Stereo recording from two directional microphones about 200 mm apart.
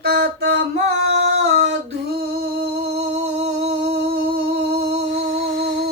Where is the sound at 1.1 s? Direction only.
60° right (ahead or behind).